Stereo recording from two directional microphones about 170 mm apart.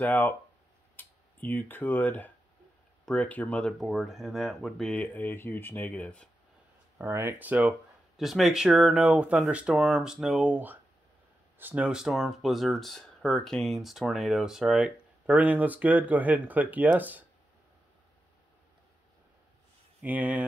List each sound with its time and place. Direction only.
0.0 s speech: 10° left (ahead or behind)
7.0 s speech: 15° right (ahead or behind)
20.0 s speech: 10° right (ahead or behind)